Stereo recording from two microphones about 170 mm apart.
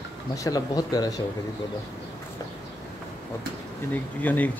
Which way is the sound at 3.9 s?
10° left (ahead or behind).